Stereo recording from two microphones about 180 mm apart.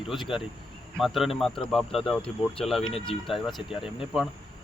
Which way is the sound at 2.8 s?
30° left (ahead or behind).